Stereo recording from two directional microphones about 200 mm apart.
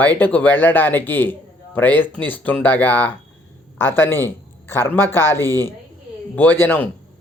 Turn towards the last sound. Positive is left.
turn(degrees=10)  # may be behind; listen again after turning